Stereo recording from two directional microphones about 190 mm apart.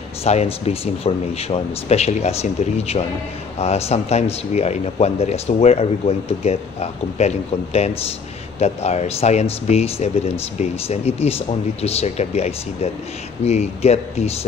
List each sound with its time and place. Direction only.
0.2 s speech: 35° left (ahead or behind)